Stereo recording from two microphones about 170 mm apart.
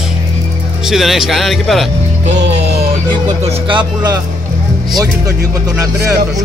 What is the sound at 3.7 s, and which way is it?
Speech, 25° right (ahead or behind).